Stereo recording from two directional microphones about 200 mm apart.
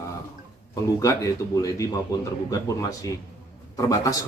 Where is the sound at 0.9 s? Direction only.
15° left (ahead or behind).